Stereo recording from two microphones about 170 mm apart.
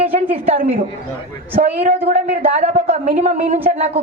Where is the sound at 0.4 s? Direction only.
40° right (ahead or behind).